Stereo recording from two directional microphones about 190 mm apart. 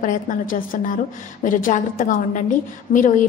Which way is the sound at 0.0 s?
45° left (ahead or behind).